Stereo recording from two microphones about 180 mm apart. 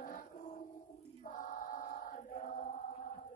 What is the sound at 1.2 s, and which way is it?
Choir, 45° left (ahead or behind).